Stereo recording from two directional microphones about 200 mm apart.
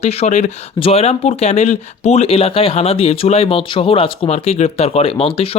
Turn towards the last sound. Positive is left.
turn(degrees=30)  # may be behind; listen again after turning